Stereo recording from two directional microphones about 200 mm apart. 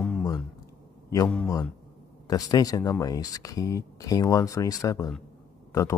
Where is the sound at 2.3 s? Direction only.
20° left (ahead or behind).